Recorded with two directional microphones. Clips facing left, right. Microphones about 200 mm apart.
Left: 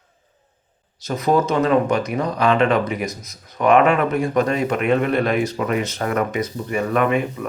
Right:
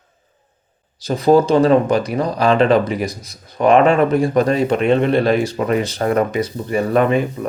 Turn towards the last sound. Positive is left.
turn(degrees=-30)  # may be behind; listen again after turning